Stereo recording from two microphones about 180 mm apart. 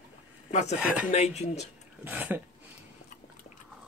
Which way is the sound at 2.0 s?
10° right (ahead or behind).